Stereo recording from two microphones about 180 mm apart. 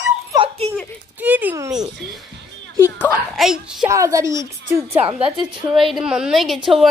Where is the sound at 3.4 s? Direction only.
5° right (ahead or behind).